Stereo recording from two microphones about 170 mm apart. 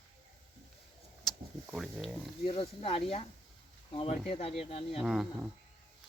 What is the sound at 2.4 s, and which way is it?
Speech, 35° left (ahead or behind).